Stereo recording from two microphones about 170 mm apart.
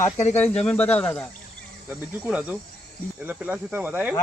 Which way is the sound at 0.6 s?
5° left (ahead or behind).